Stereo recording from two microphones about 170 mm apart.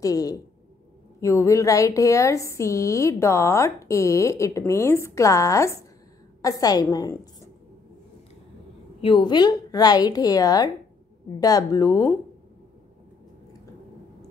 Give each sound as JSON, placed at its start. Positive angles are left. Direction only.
{"t": 0.0, "sound": "a woman's voice", "side_deg": 20}
{"t": 9.0, "sound": "a woman's voice", "side_deg": 25}